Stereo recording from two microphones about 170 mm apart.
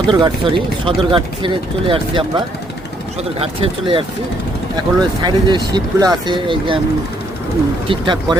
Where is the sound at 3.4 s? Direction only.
30° right (ahead or behind).